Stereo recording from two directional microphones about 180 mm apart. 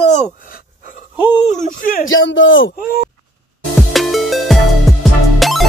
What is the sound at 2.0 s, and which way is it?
Speech, 90° left.